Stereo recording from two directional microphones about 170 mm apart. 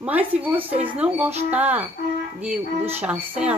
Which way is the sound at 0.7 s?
40° right (ahead or behind).